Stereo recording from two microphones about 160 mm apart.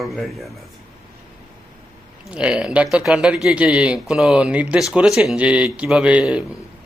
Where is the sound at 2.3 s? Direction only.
5° right (ahead or behind).